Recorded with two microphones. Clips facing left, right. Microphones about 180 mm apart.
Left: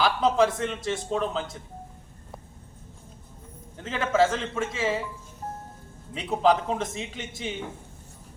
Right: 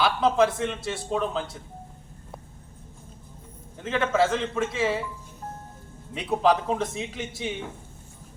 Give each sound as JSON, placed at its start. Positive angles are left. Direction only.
{"t": 0.0, "sound": "a man's voice", "side_deg": 0}
{"t": 3.8, "sound": "a man's voice", "side_deg": 0}
{"t": 6.1, "sound": "a man's voice", "side_deg": 0}